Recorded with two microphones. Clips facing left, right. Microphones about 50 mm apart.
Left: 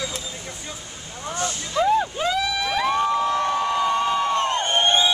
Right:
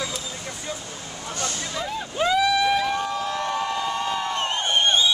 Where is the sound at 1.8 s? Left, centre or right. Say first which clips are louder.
Left 12 dB; centre.